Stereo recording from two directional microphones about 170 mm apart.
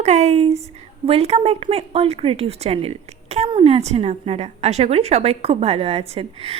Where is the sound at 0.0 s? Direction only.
40° right (ahead or behind).